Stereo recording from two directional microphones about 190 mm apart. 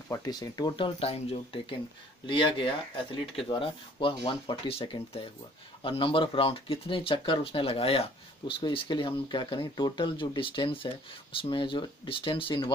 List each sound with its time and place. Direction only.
0.1 s speech: 20° left (ahead or behind)